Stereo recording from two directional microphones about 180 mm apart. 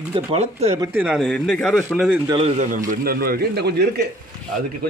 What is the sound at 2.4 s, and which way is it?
A man's voice, 45° right (ahead or behind).